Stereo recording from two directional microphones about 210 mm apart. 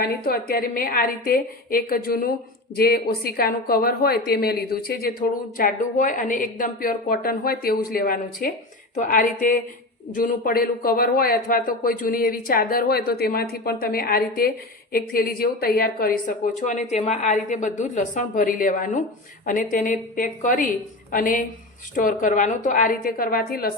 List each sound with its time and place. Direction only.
0.0 s a woman's voice: 45° left (ahead or behind)